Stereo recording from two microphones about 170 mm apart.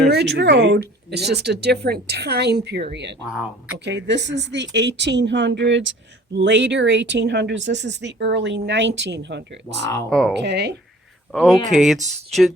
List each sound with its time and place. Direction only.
0.1 s speech: 80° right
2.9 s speech: 90° right
3.2 s speech: 5° right (ahead or behind)
3.8 s speech: 90° right
10.1 s speech: 5° left (ahead or behind)
10.4 s speech: 80° right
11.3 s speech: centre (ahead or behind)